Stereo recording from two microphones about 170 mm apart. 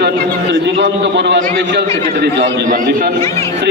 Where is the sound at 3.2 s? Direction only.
15° left (ahead or behind).